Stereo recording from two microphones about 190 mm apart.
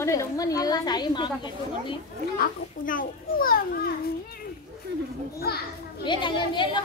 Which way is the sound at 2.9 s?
45° left (ahead or behind).